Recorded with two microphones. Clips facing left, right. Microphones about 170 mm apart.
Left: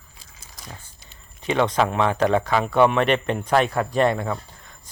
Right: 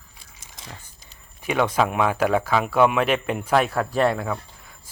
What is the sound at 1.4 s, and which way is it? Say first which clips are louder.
Speech: left 1 dB; 10° right (ahead or behind).